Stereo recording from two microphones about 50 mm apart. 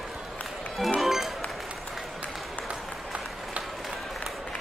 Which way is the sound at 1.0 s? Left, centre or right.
Centre.